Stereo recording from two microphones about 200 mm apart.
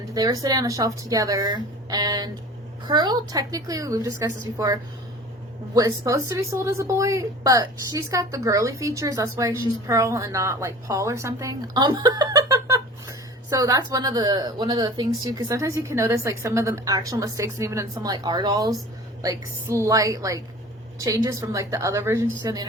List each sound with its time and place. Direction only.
0.1 s a woman's voice: 15° right (ahead or behind)